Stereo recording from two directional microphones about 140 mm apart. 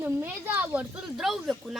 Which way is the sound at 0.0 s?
15° right (ahead or behind).